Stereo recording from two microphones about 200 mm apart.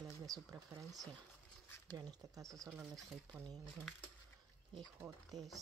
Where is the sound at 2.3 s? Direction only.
15° right (ahead or behind).